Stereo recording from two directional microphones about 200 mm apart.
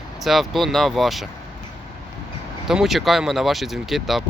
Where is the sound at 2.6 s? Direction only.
Centre (ahead or behind).